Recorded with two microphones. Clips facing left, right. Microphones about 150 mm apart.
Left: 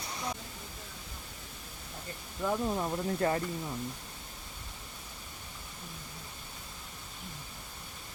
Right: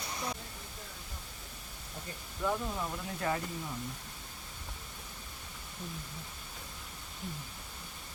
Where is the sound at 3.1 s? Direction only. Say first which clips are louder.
Left 3 dB; 35° left (ahead or behind).